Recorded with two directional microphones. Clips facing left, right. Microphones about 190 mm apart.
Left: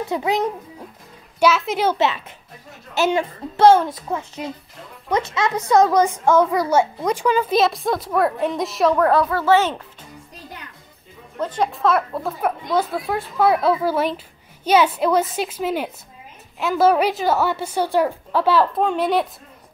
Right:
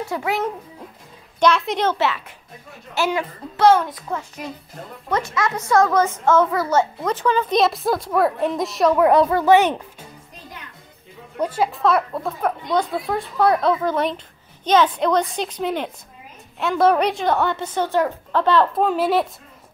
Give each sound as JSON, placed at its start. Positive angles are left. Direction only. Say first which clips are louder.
{"t": 0.1, "sound": "speech", "louder": "left 3 dB", "side_deg": 20}
{"t": 1.4, "sound": "a woman's voice", "louder": "even", "side_deg": 5}
{"t": 2.0, "sound": "a child's voice", "louder": "left 2 dB", "side_deg": 20}
{"t": 9.0, "sound": "a child's voice", "louder": "right 2 dB", "side_deg": -20}
{"t": 11.3, "sound": "a woman's voice", "louder": "right 1 dB", "side_deg": -10}